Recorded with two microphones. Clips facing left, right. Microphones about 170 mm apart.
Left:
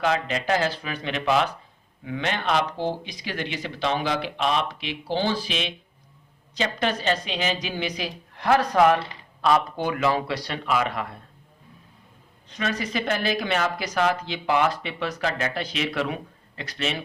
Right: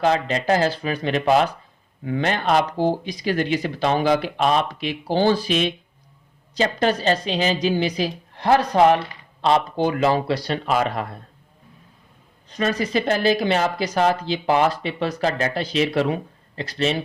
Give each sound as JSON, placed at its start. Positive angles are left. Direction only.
{"t": 0.0, "sound": "speech", "side_deg": -35}
{"t": 12.5, "sound": "speech", "side_deg": -35}